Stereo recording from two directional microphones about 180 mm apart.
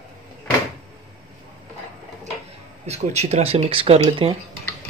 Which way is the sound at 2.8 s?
35° right (ahead or behind).